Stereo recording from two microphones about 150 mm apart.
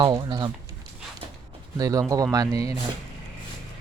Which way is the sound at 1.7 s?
25° right (ahead or behind).